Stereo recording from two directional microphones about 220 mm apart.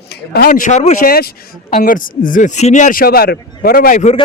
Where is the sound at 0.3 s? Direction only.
40° left (ahead or behind).